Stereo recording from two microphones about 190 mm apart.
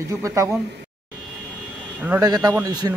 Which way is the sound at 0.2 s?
15° right (ahead or behind).